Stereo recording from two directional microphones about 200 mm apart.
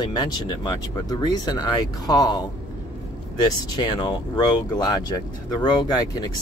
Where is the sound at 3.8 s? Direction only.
25° left (ahead or behind).